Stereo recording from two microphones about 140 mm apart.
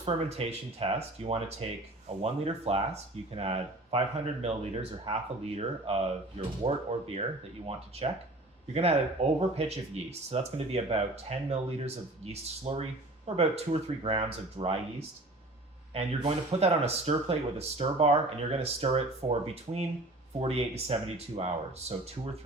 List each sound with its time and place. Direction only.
0.0 s speech: 45° right (ahead or behind)
8.7 s speech: 45° right (ahead or behind)